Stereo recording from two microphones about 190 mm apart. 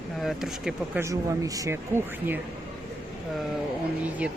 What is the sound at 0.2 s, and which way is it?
Speech, centre (ahead or behind).